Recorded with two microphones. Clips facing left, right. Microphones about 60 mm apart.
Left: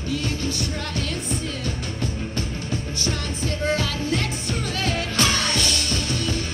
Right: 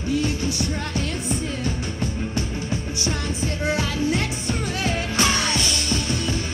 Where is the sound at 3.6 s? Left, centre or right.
Centre.